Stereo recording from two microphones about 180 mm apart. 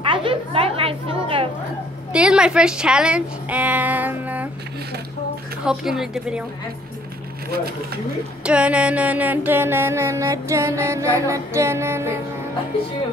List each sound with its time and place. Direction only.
0.0 s a woman's voice: 25° right (ahead or behind)
2.1 s a woman's voice: 5° right (ahead or behind)
5.7 s a woman's voice: centre (ahead or behind)
7.5 s speech: 55° right (ahead or behind)
8.5 s music: 5° right (ahead or behind)